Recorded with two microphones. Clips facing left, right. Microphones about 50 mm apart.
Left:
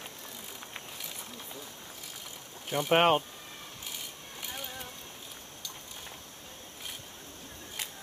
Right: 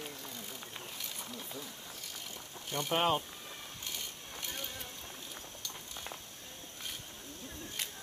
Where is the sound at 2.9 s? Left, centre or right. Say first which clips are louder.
Left 7 dB; left.